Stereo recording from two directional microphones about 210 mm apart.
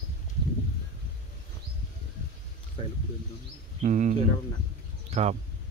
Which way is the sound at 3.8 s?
35° right (ahead or behind).